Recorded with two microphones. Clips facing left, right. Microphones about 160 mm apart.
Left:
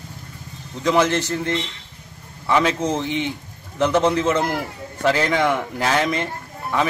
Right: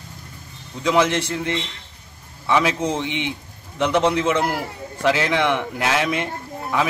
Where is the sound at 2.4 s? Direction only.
Centre (ahead or behind).